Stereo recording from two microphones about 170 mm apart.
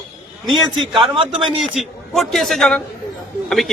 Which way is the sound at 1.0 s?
30° right (ahead or behind).